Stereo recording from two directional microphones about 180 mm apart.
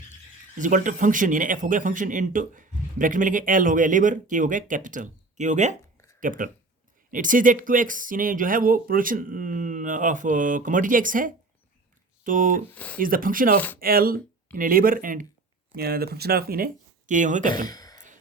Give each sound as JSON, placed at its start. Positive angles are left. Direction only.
{"t": 0.6, "sound": "speech", "side_deg": -45}
{"t": 12.6, "sound": "speech", "side_deg": 10}
{"t": 13.0, "sound": "speech", "side_deg": -50}
{"t": 15.7, "sound": "speech", "side_deg": -60}
{"t": 17.5, "sound": "a woman's voice", "side_deg": 20}
{"t": 17.9, "sound": "music", "side_deg": -45}